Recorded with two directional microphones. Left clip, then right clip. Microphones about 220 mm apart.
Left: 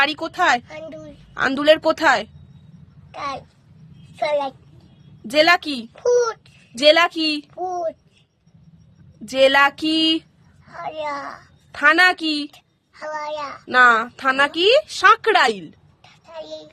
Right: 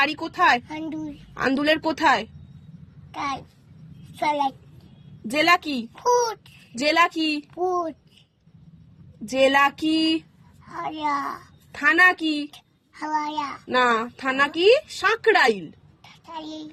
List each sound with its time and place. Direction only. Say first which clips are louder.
0.0 s a woman's voice: left 2 dB; 15° left (ahead or behind)
9.2 s a woman's voice: left 4 dB; 15° left (ahead or behind)
10.7 s a child's voice: right 1 dB; 5° left (ahead or behind)